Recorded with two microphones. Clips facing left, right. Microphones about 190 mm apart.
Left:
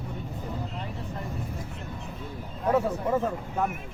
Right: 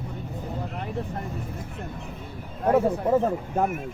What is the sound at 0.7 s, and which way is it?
Vehicle, 55° right (ahead or behind).